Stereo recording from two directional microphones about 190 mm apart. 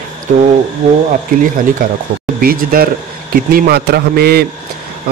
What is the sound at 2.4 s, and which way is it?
Speech, 50° right (ahead or behind).